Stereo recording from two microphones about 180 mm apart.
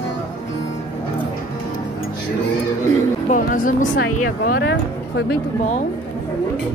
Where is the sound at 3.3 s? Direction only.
50° left (ahead or behind); by 5.2 s 70° left (ahead or behind).